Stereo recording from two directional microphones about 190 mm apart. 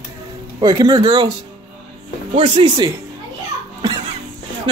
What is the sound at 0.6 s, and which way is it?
Speech, 20° right (ahead or behind).